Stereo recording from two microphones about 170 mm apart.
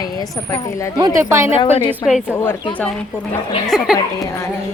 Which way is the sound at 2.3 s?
15° left (ahead or behind).